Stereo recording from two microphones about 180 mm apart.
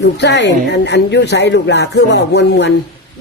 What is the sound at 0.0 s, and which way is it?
A woman's voice, 75° left (ahead or behind).